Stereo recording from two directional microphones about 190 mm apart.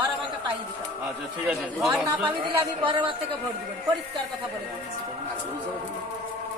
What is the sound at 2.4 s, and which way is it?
Speech, 25° right (ahead or behind).